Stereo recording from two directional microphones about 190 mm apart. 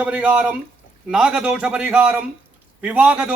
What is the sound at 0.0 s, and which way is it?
A man's voice, 5° right (ahead or behind).